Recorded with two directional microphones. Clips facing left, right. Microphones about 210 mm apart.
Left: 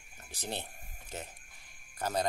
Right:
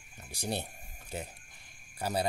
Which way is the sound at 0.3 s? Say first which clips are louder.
Right 4 dB; 10° right (ahead or behind).